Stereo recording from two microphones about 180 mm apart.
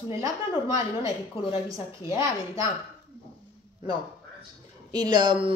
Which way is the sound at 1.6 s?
20° right (ahead or behind).